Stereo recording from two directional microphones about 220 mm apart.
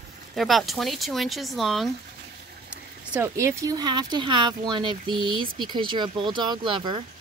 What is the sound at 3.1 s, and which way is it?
Speech, 10° right (ahead or behind).